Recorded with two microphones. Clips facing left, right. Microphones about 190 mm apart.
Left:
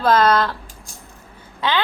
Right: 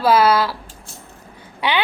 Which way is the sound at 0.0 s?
10° right (ahead or behind).